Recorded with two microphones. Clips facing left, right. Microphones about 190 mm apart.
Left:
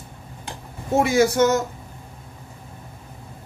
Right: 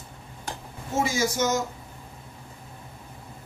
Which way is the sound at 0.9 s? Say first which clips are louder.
Left 8 dB; 60° left (ahead or behind).